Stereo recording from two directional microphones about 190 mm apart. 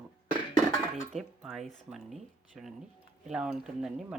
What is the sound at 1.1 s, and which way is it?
Speech, centre (ahead or behind).